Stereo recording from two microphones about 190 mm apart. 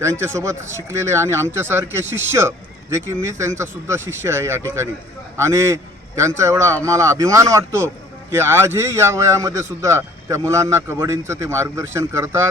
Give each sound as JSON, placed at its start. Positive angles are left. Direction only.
{"t": 0.0, "sound": "a man's voice", "side_deg": -15}